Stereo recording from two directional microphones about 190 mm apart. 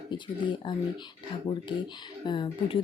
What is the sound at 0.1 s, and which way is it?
Speech, 25° left (ahead or behind).